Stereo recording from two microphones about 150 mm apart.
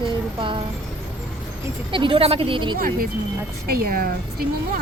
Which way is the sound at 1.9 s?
35° right (ahead or behind).